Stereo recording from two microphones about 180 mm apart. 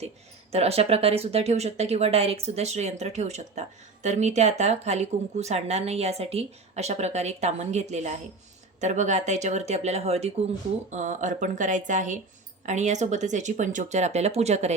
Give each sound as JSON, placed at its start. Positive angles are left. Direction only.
{"t": 0.5, "sound": "speech", "side_deg": -35}